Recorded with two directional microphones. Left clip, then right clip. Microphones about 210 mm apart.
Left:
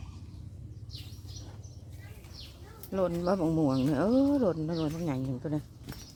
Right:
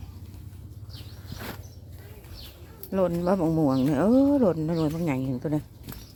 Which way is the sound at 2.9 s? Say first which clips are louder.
Right 5 dB; 15° right (ahead or behind).